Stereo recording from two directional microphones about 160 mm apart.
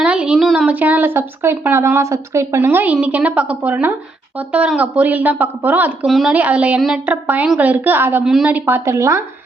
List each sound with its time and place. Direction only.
0.0 s speech: 5° right (ahead or behind)
6.1 s a woman's voice: centre (ahead or behind); by 9.2 s 20° right (ahead or behind)